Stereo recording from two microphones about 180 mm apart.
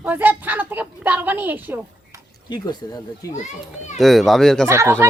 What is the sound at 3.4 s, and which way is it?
Speech, 40° left (ahead or behind).